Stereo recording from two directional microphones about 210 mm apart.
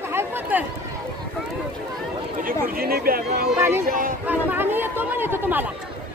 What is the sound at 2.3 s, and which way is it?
Speech, 45° right (ahead or behind).